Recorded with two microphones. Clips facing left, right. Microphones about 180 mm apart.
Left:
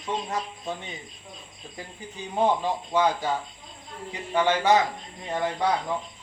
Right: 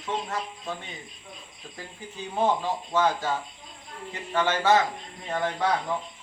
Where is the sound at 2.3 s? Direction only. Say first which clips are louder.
Left 1 dB; 15° left (ahead or behind).